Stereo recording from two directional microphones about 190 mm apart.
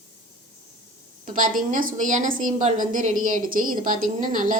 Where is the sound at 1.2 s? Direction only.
45° right (ahead or behind).